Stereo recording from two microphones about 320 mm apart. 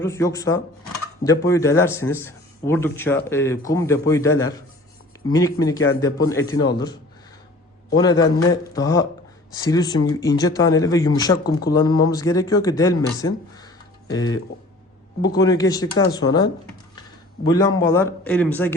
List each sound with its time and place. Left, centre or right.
0.0 s speech: centre
6.5 s a man's voice: left
7.9 s speech: centre